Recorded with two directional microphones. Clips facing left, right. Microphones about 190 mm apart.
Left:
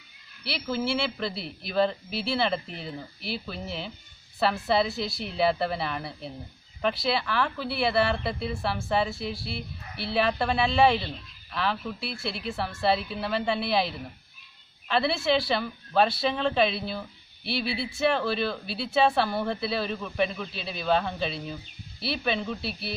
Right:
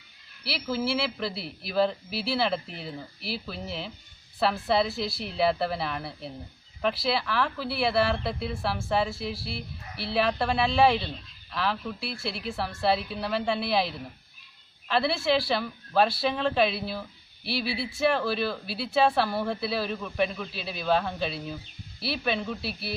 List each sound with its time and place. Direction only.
0.4 s speech: centre (ahead or behind)